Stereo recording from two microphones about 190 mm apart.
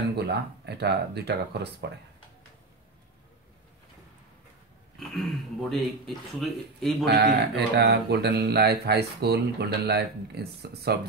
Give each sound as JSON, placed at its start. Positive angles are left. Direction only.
{"t": 0.1, "sound": "speech", "side_deg": -60}
{"t": 5.1, "sound": "speech", "side_deg": 0}
{"t": 7.1, "sound": "speech", "side_deg": -60}